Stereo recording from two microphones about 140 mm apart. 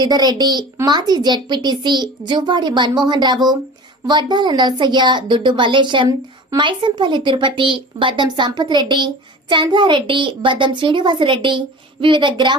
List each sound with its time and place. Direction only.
0.0 s speech: 30° right (ahead or behind)